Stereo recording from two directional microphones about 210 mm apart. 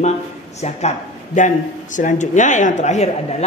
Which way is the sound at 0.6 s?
30° left (ahead or behind).